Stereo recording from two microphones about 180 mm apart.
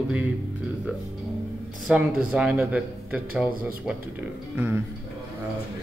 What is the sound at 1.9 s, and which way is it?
Speech, 5° right (ahead or behind).